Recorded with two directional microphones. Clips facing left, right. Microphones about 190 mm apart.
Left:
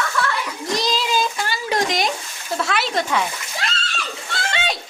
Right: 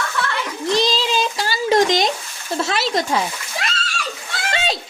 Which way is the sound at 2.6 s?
35° right (ahead or behind).